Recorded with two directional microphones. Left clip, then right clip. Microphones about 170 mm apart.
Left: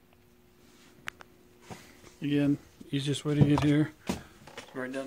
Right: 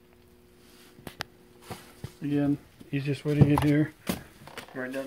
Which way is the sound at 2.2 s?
30° left (ahead or behind).